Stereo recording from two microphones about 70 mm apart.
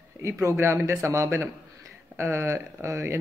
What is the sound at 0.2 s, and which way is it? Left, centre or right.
Speech, right.